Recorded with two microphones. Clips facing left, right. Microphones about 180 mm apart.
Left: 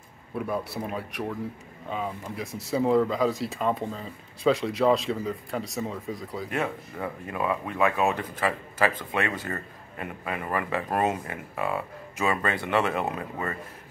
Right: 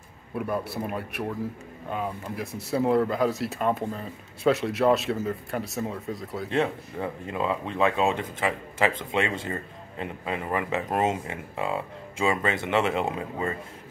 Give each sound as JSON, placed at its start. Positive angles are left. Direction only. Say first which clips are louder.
{"t": 0.4, "sound": "speech", "louder": "right 1 dB", "side_deg": 0}
{"t": 6.5, "sound": "speech", "louder": "right 5 dB", "side_deg": -25}